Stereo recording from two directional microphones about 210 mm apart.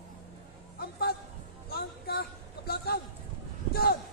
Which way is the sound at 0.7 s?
50° left (ahead or behind).